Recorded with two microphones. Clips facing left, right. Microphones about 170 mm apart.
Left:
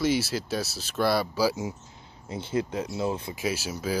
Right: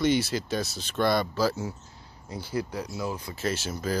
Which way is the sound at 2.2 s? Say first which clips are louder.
Left 3 dB; 20° left (ahead or behind).